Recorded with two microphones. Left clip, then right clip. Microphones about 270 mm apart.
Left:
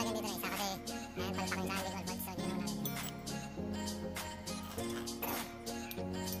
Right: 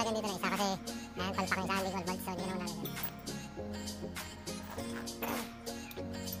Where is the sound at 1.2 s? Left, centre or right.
Centre.